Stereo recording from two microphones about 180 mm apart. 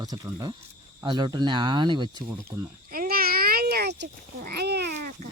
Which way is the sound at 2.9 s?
55° right (ahead or behind).